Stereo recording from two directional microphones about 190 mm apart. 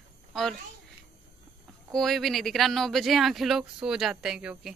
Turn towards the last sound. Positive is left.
turn(degrees=-5)  # may be behind; listen again after turning